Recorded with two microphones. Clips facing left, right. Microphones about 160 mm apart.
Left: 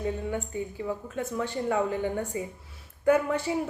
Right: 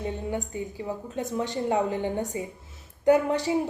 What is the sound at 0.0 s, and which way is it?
A woman's voice, 20° right (ahead or behind).